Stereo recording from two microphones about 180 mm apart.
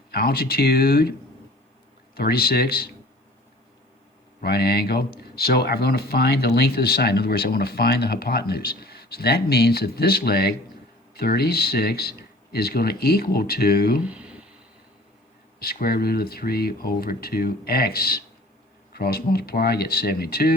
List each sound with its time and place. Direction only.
0.1 s speech: 60° left (ahead or behind)
2.1 s speech: 60° left (ahead or behind)
4.4 s speech: 60° left (ahead or behind)
14.0 s a sound: 5° right (ahead or behind)
15.6 s speech: 60° left (ahead or behind)